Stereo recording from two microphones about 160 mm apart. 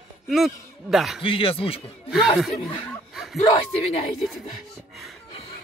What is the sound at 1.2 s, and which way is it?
Speech, 35° left (ahead or behind).